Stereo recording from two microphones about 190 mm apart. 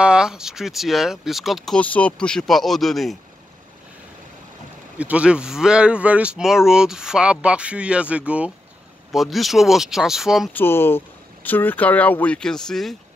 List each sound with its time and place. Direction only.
0.0 s speech: 5° right (ahead or behind)
4.9 s speech: 5° right (ahead or behind)
10.5 s speech: 10° left (ahead or behind)